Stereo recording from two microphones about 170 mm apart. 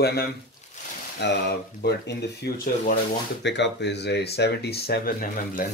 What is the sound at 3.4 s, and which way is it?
Speech, 90° left.